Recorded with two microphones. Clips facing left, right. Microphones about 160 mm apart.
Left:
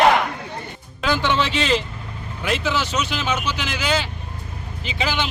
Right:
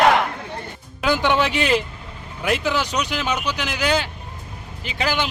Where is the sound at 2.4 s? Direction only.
10° right (ahead or behind).